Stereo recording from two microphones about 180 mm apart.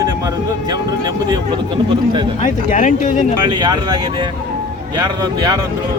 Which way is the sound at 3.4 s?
25° right (ahead or behind).